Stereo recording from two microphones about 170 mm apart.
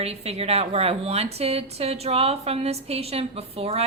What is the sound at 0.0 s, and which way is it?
A woman's voice, 35° right (ahead or behind).